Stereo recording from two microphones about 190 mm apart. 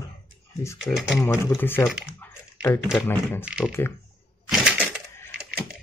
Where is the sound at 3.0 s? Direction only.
10° left (ahead or behind).